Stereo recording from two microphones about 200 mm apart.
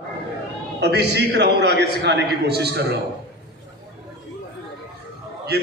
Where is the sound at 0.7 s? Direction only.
55° right (ahead or behind).